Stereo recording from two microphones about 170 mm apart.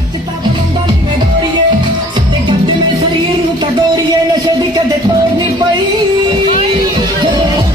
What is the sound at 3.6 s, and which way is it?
Music, 25° right (ahead or behind).